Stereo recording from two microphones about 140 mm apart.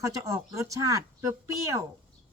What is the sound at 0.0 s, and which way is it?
A man's voice, 20° right (ahead or behind).